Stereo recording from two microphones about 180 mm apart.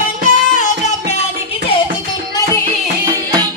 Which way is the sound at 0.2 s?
45° left (ahead or behind).